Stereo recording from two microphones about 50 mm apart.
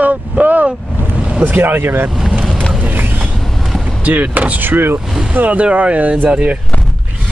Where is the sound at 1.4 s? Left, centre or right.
Right.